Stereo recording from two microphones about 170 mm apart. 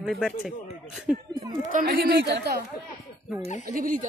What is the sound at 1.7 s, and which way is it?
Speech, 50° right (ahead or behind).